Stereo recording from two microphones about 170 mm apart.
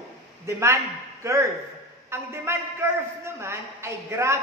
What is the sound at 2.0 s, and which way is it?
A man's voice, 15° right (ahead or behind).